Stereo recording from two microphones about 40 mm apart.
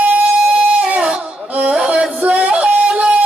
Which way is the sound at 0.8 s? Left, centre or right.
Right.